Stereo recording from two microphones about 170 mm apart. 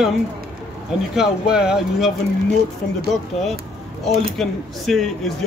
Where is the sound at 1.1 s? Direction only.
5° right (ahead or behind).